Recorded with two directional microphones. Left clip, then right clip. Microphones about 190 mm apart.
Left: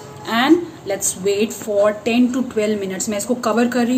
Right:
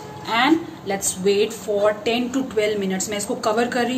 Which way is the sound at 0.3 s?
45° left (ahead or behind).